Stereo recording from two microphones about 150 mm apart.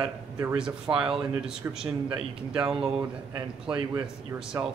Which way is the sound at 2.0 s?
30° right (ahead or behind).